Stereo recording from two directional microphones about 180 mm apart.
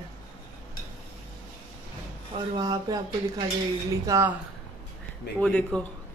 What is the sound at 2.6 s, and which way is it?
A woman's voice, 20° right (ahead or behind).